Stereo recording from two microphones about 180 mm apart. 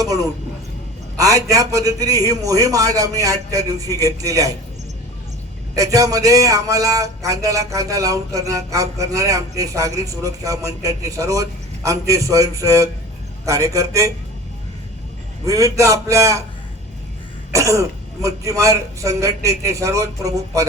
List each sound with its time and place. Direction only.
0.0 s speech: 20° right (ahead or behind)
5.7 s a man's voice: 20° right (ahead or behind)
15.4 s a man's voice: 20° right (ahead or behind)
17.5 s a man's voice: 15° right (ahead or behind)